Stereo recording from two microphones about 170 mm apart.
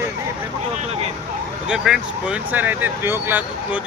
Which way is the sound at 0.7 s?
40° right (ahead or behind).